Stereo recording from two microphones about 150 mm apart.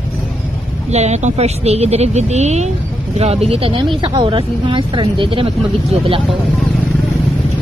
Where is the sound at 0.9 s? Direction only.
50° right (ahead or behind).